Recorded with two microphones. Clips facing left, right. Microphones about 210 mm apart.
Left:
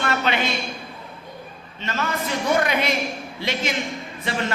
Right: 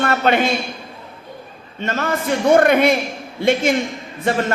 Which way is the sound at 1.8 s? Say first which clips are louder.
Right 6 dB; 50° right (ahead or behind).